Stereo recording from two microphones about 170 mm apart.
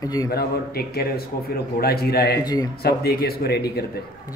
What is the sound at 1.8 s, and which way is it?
Speech, 65° left (ahead or behind).